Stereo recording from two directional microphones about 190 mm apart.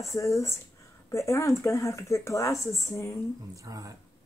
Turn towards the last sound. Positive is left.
turn(degrees=-15)  # may be behind; listen again after turning